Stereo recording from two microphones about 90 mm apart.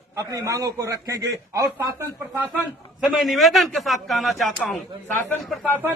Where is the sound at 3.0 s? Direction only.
Centre (ahead or behind).